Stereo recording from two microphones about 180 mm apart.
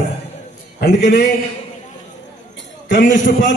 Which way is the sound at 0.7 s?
60° left (ahead or behind).